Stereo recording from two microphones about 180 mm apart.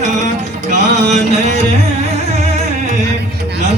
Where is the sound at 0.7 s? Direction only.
40° right (ahead or behind).